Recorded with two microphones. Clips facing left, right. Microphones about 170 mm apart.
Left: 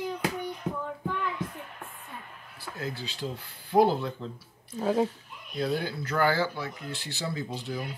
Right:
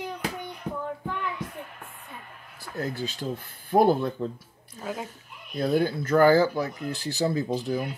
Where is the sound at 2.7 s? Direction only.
45° right (ahead or behind).